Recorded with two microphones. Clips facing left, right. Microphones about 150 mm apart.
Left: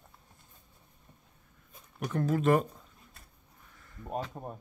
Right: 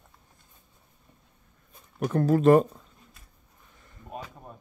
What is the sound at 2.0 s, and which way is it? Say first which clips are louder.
Speech: right 7 dB; 40° right (ahead or behind).